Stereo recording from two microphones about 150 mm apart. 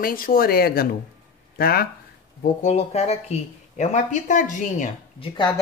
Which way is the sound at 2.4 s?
50° left (ahead or behind).